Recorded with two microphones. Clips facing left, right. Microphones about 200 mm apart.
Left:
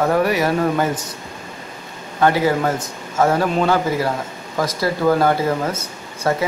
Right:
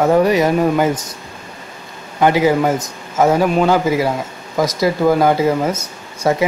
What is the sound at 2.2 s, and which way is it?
Speech, 15° right (ahead or behind).